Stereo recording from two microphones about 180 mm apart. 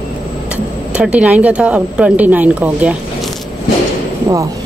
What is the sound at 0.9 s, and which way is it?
Speech, 5° right (ahead or behind).